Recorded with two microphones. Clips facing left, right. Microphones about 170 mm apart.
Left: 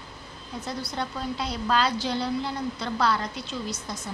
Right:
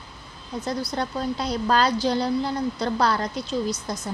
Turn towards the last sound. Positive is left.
turn(degrees=-40)  # may be behind; listen again after turning